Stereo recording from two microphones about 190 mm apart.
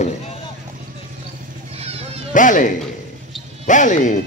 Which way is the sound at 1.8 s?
35° right (ahead or behind).